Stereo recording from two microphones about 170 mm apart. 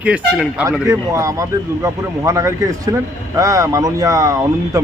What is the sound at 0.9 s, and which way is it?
Speech, 20° right (ahead or behind).